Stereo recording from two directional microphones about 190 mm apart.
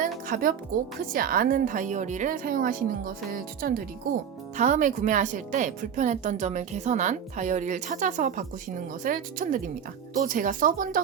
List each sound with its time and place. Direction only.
0.3 s a woman's voice: 50° right (ahead or behind)